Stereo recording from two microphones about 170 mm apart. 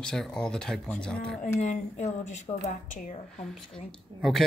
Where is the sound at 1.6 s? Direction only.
45° left (ahead or behind).